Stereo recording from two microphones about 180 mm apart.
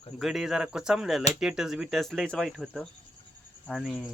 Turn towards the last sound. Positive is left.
turn(degrees=0)  # may be behind; listen again after turning